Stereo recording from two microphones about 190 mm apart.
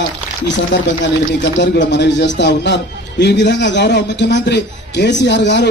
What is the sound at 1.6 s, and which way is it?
A man's voice, 65° left (ahead or behind).